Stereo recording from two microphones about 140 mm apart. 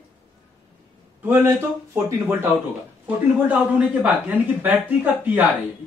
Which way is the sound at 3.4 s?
10° right (ahead or behind).